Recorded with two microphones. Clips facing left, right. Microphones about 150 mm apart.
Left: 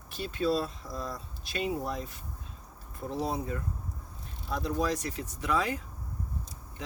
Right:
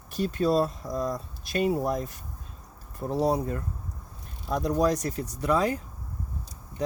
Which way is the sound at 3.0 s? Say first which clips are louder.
Right 7 dB; 45° right (ahead or behind).